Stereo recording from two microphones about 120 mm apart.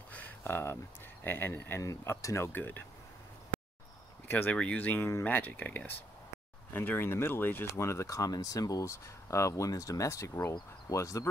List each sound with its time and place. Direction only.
0.1 s a sound: 15° left (ahead or behind)
1.2 s speech: 15° left (ahead or behind)
4.3 s speech: 15° left (ahead or behind)